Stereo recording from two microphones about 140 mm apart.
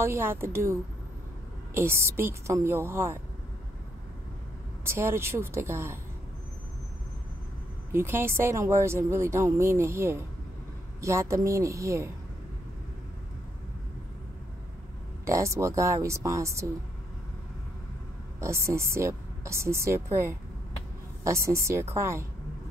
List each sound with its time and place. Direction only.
0.0 s a woman's voice: 15° right (ahead or behind)
4.8 s a woman's voice: 20° right (ahead or behind)
7.9 s speech: 15° right (ahead or behind)
15.2 s speech: 20° right (ahead or behind)
18.4 s speech: 20° right (ahead or behind)